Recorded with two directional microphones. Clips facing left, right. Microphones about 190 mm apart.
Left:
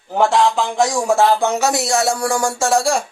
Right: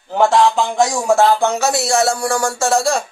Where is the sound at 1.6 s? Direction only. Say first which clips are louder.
Right 1 dB; 15° left (ahead or behind).